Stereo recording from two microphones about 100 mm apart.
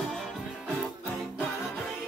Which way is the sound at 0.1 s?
Centre (ahead or behind).